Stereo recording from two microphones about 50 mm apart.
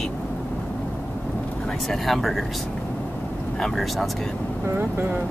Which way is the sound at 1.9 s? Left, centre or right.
Centre.